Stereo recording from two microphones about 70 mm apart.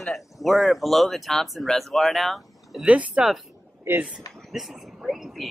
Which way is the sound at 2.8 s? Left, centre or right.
Centre.